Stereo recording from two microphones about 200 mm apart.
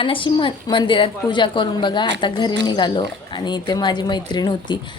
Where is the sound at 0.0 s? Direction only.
25° left (ahead or behind).